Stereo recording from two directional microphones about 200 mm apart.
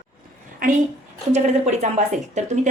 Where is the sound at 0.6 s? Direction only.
40° right (ahead or behind).